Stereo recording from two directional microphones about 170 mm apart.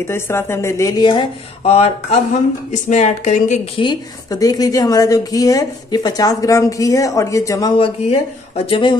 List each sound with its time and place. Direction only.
0.0 s a woman's voice: 15° left (ahead or behind); by 3.8 s 45° left (ahead or behind)
3.8 s a woman's voice: 25° left (ahead or behind)